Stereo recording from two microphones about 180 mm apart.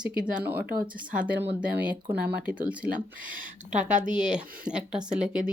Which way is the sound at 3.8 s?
45° right (ahead or behind).